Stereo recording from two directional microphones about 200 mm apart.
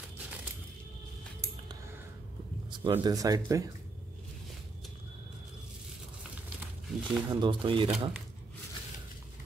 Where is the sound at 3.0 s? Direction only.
20° right (ahead or behind).